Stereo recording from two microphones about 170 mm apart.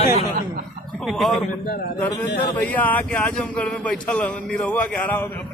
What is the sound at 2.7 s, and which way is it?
A man's voice, 10° left (ahead or behind).